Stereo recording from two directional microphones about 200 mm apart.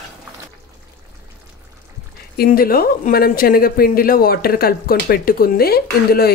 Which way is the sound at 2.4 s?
45° left (ahead or behind).